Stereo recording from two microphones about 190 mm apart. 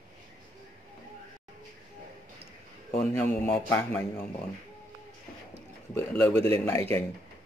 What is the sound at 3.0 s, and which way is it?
Speech, 5° left (ahead or behind).